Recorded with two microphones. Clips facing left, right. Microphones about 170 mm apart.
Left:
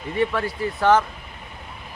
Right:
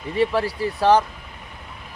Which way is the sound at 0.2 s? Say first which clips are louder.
Right 2 dB; 35° right (ahead or behind).